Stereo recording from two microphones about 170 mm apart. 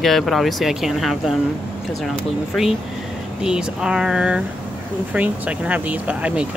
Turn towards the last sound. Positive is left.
turn(degrees=-5)  # may be behind; listen again after turning